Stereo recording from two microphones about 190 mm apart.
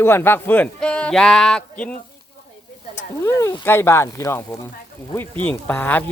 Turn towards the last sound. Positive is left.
turn(degrees=10)  # may be behind; listen again after turning